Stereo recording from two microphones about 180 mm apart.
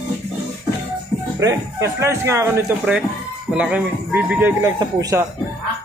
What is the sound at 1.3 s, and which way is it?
Speech, 15° right (ahead or behind).